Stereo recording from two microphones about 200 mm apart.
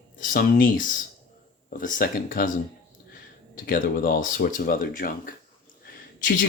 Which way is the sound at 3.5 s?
45° left (ahead or behind).